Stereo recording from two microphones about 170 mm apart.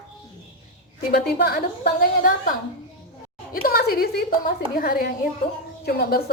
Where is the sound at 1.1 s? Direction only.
70° left (ahead or behind).